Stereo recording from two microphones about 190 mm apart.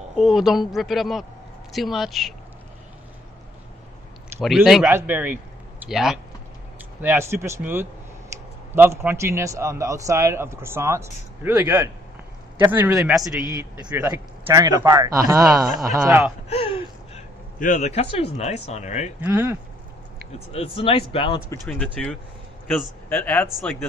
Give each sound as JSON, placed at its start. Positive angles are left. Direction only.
{"t": 0.2, "sound": "a woman's voice", "side_deg": 0}
{"t": 4.4, "sound": "a woman's voice", "side_deg": 0}
{"t": 7.0, "sound": "a man's voice", "side_deg": -10}
{"t": 8.3, "sound": "a sound", "side_deg": -15}
{"t": 8.7, "sound": "a man's voice", "side_deg": -10}
{"t": 16.4, "sound": "speech", "side_deg": 30}
{"t": 17.6, "sound": "speech", "side_deg": 40}
{"t": 19.2, "sound": "a man's voice", "side_deg": -10}
{"t": 20.3, "sound": "a man's voice", "side_deg": 30}
{"t": 21.6, "sound": "a woman's voice", "side_deg": 5}